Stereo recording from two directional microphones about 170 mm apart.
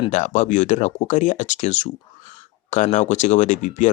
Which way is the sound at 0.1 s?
45° left (ahead or behind).